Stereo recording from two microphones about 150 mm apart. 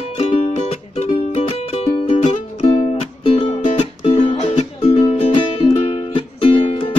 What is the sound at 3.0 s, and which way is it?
Music, 45° left (ahead or behind).